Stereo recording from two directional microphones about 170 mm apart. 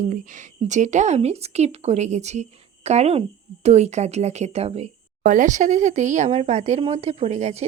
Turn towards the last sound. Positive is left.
turn(degrees=-40)  # may be behind; listen again after turning